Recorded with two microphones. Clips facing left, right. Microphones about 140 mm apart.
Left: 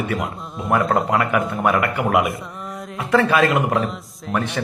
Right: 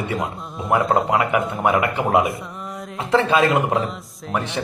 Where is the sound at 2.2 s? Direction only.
Centre (ahead or behind).